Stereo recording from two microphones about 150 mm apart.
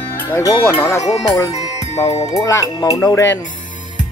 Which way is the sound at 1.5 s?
45° left (ahead or behind).